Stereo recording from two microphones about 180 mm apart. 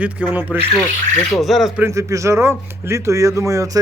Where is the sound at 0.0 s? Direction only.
5° right (ahead or behind).